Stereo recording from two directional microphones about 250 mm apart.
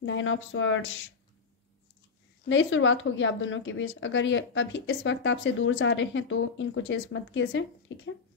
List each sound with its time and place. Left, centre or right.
0.0 s a woman's voice: left
2.4 s a woman's voice: left